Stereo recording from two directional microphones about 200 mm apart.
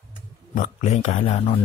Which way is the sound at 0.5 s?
40° left (ahead or behind).